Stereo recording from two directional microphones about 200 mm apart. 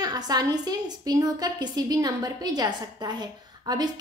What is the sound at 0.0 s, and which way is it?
A woman's voice, 20° right (ahead or behind).